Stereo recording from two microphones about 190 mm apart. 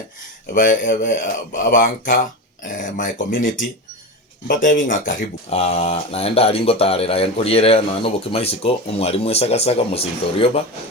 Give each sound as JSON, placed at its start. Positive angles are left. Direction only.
{"t": 0.5, "sound": "speech", "side_deg": 45}